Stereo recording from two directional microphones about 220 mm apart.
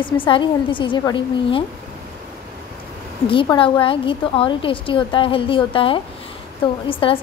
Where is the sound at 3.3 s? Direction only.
25° left (ahead or behind).